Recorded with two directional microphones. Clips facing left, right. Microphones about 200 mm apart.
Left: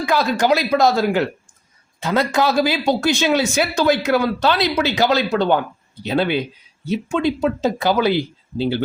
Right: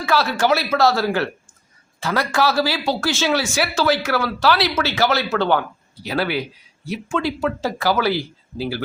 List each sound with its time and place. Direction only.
0.0 s speech: 15° left (ahead or behind)